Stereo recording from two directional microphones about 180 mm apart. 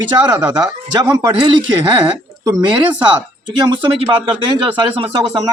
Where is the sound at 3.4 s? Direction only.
25° right (ahead or behind).